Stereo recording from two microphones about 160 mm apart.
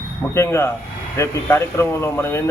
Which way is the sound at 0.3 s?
15° left (ahead or behind).